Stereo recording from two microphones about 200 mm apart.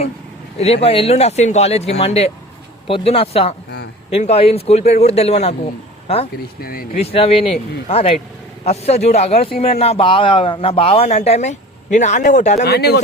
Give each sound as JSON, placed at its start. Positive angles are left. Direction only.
{"t": 0.6, "sound": "a man's voice", "side_deg": 30}
{"t": 6.6, "sound": "speech", "side_deg": 45}
{"t": 6.9, "sound": "a man's voice", "side_deg": 30}
{"t": 12.6, "sound": "speech", "side_deg": 55}